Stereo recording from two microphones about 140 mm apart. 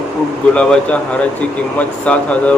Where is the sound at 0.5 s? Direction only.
10° left (ahead or behind).